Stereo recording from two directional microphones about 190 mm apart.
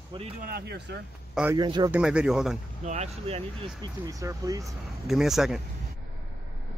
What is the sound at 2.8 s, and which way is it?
Speech, 35° right (ahead or behind).